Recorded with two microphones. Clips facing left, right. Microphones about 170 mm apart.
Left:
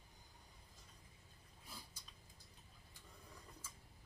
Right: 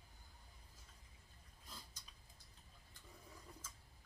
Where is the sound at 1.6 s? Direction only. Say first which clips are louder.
Left 1 dB; 10° left (ahead or behind).